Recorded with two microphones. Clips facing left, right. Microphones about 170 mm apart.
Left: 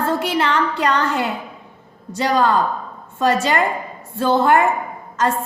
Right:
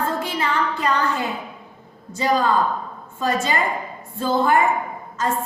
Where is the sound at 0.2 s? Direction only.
75° left (ahead or behind).